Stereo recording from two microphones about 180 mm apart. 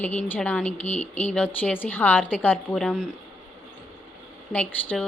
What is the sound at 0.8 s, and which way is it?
Speech, 40° left (ahead or behind).